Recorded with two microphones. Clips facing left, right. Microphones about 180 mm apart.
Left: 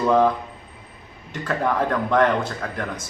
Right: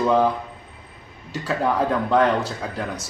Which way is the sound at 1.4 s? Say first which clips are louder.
Right 1 dB; 5° right (ahead or behind).